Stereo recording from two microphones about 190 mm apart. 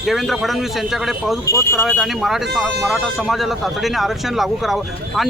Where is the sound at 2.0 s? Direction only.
Centre (ahead or behind).